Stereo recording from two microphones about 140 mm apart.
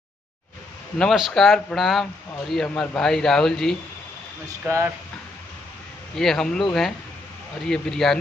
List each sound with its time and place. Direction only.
0.9 s speech: centre (ahead or behind)
4.5 s speech: 20° right (ahead or behind)
6.1 s speech: 5° left (ahead or behind)
7.6 s speech: 5° left (ahead or behind)